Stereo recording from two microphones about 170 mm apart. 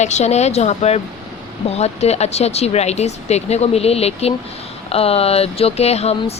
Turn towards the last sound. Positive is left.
turn(degrees=40)  # may be behind; listen again after turning